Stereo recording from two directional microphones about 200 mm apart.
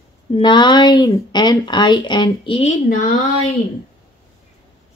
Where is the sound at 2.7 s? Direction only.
40° left (ahead or behind).